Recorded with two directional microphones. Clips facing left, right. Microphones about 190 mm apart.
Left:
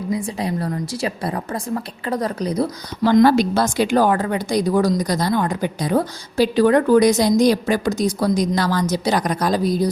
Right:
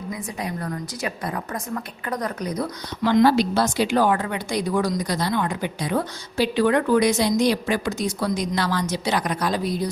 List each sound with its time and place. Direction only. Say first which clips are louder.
0.1 s a woman's voice: left 7 dB; 30° left (ahead or behind)
3.1 s a woman's voice: left 4 dB; 45° left (ahead or behind)